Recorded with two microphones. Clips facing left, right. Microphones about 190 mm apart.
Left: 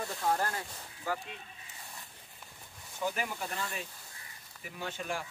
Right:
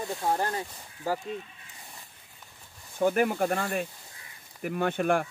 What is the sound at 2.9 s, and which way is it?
Speech, 55° right (ahead or behind).